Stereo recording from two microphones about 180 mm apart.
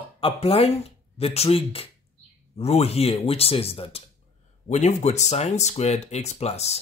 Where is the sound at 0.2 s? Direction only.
35° left (ahead or behind).